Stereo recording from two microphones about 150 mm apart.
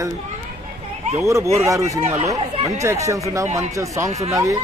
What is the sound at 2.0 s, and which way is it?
Speech, 45° right (ahead or behind).